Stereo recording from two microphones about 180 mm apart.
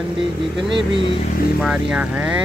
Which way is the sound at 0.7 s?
25° right (ahead or behind).